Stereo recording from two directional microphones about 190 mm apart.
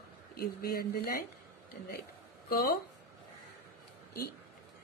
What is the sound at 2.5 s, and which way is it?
Speech, 50° left (ahead or behind).